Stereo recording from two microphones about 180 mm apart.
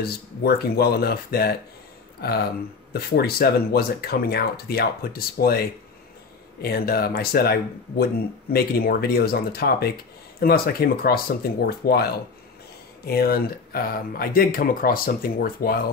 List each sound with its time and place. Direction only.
0.0 s speech: 60° left (ahead or behind)